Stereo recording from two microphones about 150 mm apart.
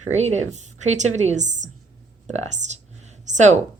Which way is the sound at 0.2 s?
50° right (ahead or behind).